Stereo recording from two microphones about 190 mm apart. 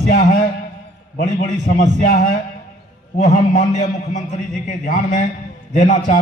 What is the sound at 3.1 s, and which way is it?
A man's voice, 40° left (ahead or behind).